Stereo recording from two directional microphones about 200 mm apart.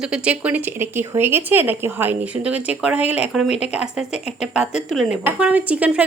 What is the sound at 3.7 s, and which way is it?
A woman's voice, 5° right (ahead or behind).